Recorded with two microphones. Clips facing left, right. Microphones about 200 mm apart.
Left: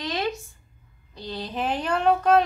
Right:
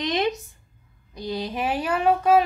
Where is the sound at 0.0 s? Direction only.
20° right (ahead or behind).